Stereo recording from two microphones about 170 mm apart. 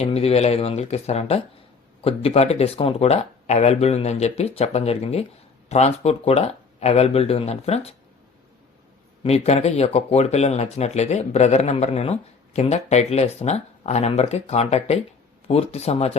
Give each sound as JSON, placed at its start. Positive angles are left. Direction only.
{"t": 0.0, "sound": "speech", "side_deg": 35}
{"t": 9.2, "sound": "speech", "side_deg": 40}